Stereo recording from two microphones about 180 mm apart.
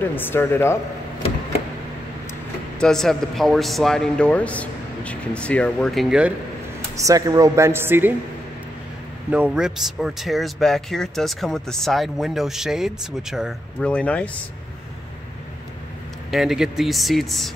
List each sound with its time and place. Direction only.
0.0 s speech: 10° left (ahead or behind)
2.8 s speech: 5° left (ahead or behind)
7.0 s a woman's voice: 20° right (ahead or behind)
9.3 s speech: 5° right (ahead or behind)
16.3 s speech: centre (ahead or behind)